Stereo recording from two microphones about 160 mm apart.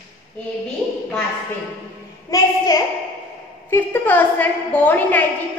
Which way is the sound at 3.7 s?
10° left (ahead or behind).